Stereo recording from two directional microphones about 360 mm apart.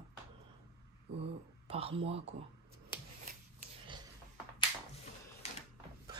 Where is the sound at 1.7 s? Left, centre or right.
Centre.